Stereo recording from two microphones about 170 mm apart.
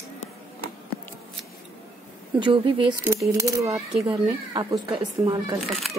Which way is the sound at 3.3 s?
20° right (ahead or behind).